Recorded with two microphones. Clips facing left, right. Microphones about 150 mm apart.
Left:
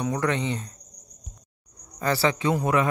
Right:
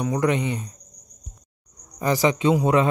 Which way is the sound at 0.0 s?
10° right (ahead or behind).